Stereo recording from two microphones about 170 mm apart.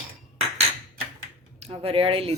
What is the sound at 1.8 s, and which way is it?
Speech, 30° right (ahead or behind).